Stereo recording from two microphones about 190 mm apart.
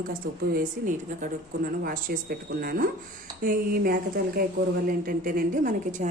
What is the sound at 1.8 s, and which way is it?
A woman's voice, 45° right (ahead or behind).